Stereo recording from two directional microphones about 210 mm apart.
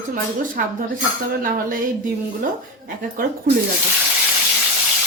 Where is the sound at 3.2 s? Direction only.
40° right (ahead or behind).